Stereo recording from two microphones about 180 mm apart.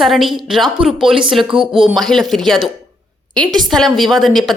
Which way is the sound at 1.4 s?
30° right (ahead or behind).